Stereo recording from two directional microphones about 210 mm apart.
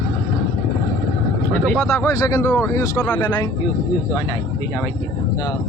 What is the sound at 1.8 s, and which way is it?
Speech, 15° left (ahead or behind).